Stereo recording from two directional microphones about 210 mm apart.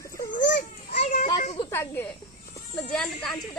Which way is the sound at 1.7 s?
10° left (ahead or behind).